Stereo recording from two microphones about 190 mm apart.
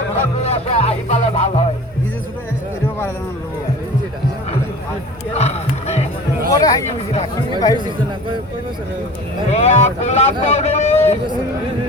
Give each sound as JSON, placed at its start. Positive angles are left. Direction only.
{"t": 0.4, "sound": "speech", "side_deg": 35}
{"t": 5.3, "sound": "music", "side_deg": 35}
{"t": 6.5, "sound": "a sound", "side_deg": 20}
{"t": 9.5, "sound": "speech", "side_deg": 35}